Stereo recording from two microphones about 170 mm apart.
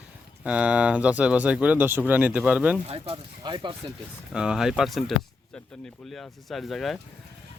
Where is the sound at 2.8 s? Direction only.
35° right (ahead or behind).